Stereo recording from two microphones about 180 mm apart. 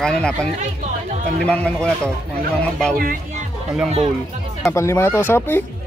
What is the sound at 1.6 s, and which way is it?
Speech, 5° left (ahead or behind).